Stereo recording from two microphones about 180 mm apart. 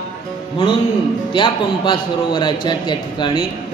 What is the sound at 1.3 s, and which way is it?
A woman's voice, 25° left (ahead or behind).